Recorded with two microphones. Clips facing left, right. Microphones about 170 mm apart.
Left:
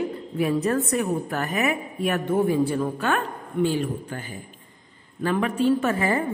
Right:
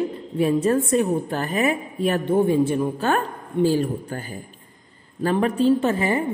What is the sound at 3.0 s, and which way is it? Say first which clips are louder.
A woman's voice: right 3 dB; 35° right (ahead or behind).